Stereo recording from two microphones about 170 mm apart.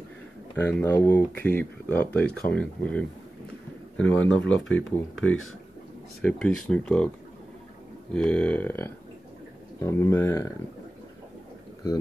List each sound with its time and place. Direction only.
0.6 s speech: 10° left (ahead or behind)
8.1 s speech: 5° left (ahead or behind)